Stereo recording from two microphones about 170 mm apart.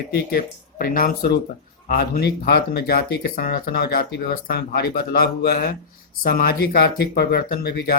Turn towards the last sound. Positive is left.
turn(degrees=65)  # may be behind; listen again after turning